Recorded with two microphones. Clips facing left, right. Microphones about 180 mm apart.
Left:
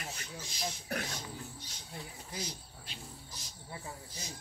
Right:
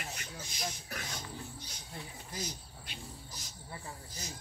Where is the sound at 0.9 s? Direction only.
60° left (ahead or behind).